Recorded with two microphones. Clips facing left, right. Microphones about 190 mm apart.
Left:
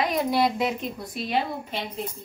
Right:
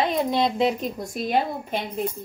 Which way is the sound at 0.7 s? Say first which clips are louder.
Right 4 dB; 45° right (ahead or behind).